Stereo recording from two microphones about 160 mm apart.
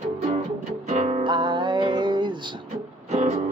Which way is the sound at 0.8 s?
45° right (ahead or behind).